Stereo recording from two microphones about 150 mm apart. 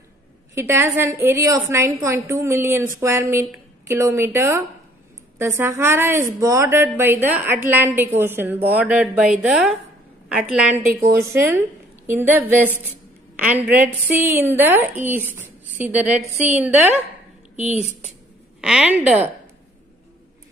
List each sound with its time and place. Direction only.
0.6 s a woman's voice: 15° right (ahead or behind)
11.0 s a woman's voice: 20° right (ahead or behind)
18.6 s a woman's voice: 5° right (ahead or behind)